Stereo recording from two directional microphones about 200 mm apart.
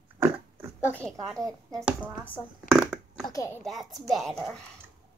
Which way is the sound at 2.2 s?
5° left (ahead or behind).